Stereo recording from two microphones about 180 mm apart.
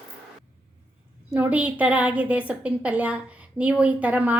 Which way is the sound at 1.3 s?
10° right (ahead or behind).